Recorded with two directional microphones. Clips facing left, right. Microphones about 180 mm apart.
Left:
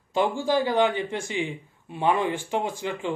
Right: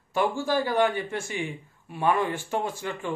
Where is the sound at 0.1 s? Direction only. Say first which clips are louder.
Left 2 dB; 15° left (ahead or behind).